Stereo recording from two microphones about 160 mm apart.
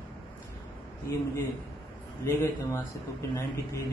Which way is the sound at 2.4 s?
15° left (ahead or behind).